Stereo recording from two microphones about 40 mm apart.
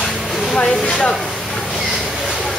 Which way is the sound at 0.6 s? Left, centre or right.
Centre.